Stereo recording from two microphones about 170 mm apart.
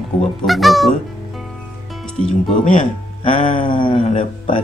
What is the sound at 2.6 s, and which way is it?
Speech, 45° left (ahead or behind).